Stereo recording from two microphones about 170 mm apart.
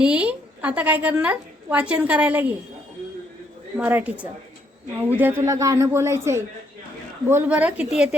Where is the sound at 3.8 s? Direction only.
10° right (ahead or behind).